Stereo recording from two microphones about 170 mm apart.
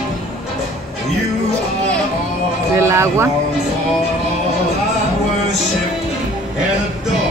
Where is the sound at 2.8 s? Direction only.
15° right (ahead or behind).